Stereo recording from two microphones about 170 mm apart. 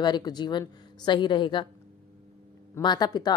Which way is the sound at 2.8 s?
25° left (ahead or behind).